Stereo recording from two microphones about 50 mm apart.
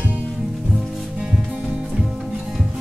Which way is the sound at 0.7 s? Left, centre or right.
Centre.